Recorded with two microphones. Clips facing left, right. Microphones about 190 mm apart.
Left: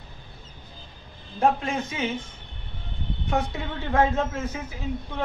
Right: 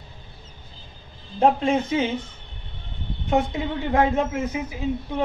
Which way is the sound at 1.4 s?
25° right (ahead or behind).